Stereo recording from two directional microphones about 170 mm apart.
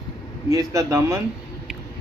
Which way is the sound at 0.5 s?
20° right (ahead or behind).